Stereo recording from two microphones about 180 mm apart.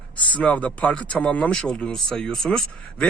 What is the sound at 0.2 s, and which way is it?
Speech, 10° left (ahead or behind).